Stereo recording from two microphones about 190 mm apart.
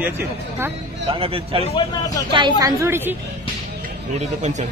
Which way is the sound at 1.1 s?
30° right (ahead or behind).